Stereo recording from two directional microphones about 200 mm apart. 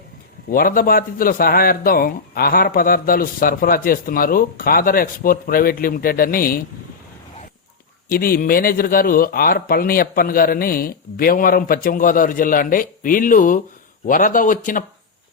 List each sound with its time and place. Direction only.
0.5 s speech: 45° left (ahead or behind)
8.1 s speech: 45° left (ahead or behind)